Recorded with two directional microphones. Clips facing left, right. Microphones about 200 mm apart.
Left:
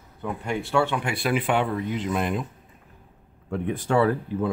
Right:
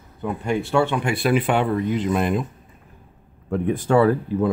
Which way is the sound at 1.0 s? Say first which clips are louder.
Right 5 dB; 45° right (ahead or behind).